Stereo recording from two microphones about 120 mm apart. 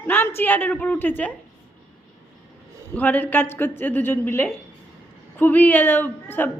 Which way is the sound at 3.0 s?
15° left (ahead or behind).